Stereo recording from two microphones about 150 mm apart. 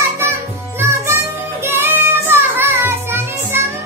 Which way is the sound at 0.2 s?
15° right (ahead or behind).